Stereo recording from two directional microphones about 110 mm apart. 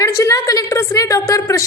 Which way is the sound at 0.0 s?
30° left (ahead or behind).